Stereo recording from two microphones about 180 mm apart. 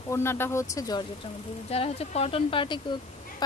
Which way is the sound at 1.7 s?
35° left (ahead or behind).